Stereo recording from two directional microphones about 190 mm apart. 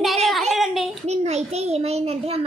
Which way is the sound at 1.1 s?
35° right (ahead or behind).